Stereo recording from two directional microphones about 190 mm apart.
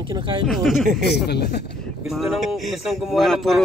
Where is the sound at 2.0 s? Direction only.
Centre (ahead or behind).